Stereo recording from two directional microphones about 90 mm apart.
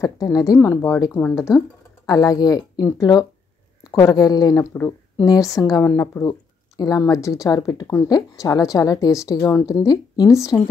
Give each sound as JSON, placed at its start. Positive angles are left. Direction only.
{"t": 0.0, "sound": "a woman's voice", "side_deg": 40}
{"t": 2.0, "sound": "a woman's voice", "side_deg": 40}
{"t": 6.8, "sound": "a woman's voice", "side_deg": 40}